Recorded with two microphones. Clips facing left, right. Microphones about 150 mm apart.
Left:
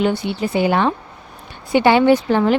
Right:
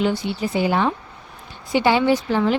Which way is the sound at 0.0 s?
60° left (ahead or behind).